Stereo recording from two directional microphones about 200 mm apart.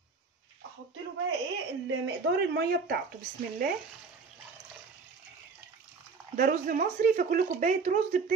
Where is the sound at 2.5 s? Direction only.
50° right (ahead or behind).